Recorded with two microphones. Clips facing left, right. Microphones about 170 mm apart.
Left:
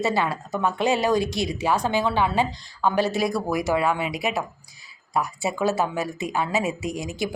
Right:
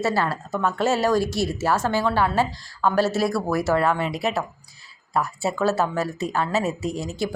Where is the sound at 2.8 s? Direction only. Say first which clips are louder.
Right 1 dB; 25° left (ahead or behind).